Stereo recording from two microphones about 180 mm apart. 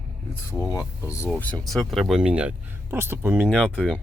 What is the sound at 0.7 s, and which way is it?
Speech, 20° left (ahead or behind).